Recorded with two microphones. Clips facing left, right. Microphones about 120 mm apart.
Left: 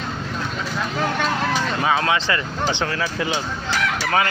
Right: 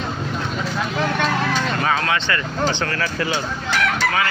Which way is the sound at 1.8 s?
20° left (ahead or behind).